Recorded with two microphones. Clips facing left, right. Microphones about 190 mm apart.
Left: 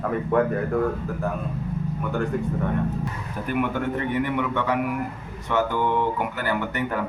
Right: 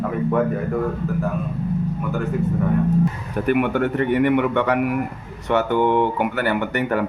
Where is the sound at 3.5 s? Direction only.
65° right (ahead or behind).